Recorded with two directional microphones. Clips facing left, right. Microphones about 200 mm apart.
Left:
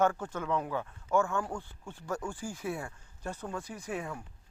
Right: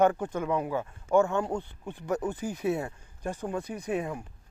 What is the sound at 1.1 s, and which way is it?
Speech, 20° right (ahead or behind).